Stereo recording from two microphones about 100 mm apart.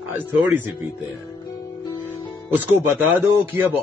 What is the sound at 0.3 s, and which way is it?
Speech, 20° right (ahead or behind).